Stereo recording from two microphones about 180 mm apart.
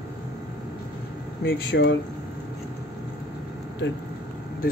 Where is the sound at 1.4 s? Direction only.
80° left.